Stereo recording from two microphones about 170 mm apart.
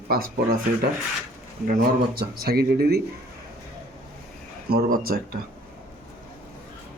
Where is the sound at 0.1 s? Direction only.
65° right (ahead or behind).